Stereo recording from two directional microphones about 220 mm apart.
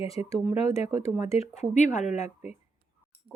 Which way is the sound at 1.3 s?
30° left (ahead or behind).